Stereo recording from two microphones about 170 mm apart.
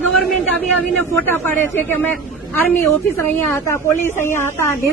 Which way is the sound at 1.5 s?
10° left (ahead or behind).